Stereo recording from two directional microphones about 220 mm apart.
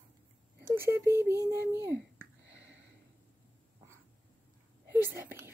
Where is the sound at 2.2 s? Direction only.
55° right (ahead or behind).